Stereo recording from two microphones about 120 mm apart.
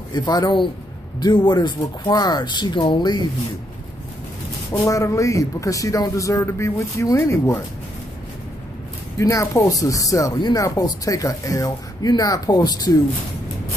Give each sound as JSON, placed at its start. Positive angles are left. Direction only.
{"t": 0.1, "sound": "speech", "side_deg": 35}
{"t": 4.8, "sound": "speech", "side_deg": 25}
{"t": 9.2, "sound": "speech", "side_deg": 25}